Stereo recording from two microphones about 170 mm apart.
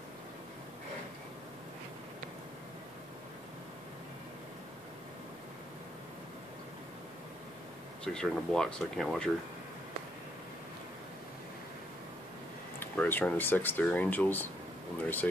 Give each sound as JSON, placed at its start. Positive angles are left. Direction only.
{"t": 8.0, "sound": "speech", "side_deg": 5}
{"t": 12.7, "sound": "speech", "side_deg": 10}